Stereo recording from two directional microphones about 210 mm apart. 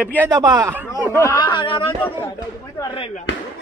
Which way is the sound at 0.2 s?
20° right (ahead or behind).